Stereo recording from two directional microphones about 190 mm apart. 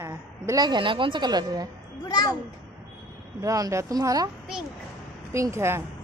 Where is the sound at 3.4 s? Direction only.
15° right (ahead or behind).